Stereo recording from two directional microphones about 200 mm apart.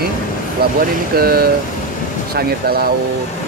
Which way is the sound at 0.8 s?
50° right (ahead or behind).